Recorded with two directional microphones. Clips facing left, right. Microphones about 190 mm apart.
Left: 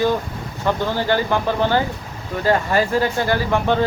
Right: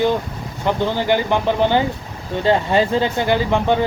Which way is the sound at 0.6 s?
20° right (ahead or behind).